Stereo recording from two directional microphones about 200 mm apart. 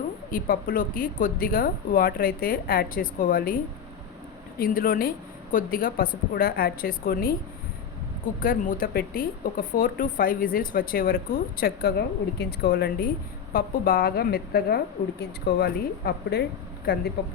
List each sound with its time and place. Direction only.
0.3 s speech: 45° left (ahead or behind)
4.6 s speech: 45° left (ahead or behind)
8.4 s speech: 45° left (ahead or behind)